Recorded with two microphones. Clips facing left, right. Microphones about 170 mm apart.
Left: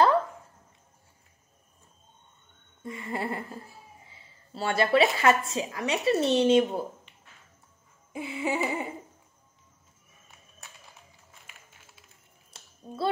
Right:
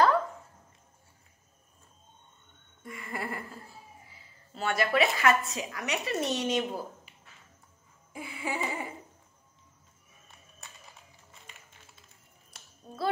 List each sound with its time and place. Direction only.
2.8 s speech: 25° left (ahead or behind)
8.1 s speech: 25° left (ahead or behind)
10.6 s music: centre (ahead or behind)
12.5 s a sound: 30° left (ahead or behind)